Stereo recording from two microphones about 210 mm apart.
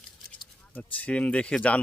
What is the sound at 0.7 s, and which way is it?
Speech, 5° left (ahead or behind).